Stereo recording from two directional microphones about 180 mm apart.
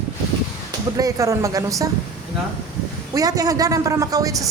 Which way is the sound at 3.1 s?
20° right (ahead or behind).